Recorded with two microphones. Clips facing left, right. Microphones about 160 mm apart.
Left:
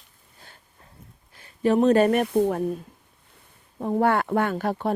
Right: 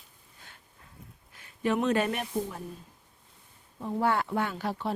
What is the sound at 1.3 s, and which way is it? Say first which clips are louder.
Speech: left 7 dB; 35° left (ahead or behind).